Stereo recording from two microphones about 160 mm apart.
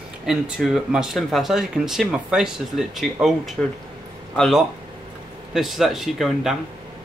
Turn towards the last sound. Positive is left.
turn(degrees=0)  # may be behind; listen again after turning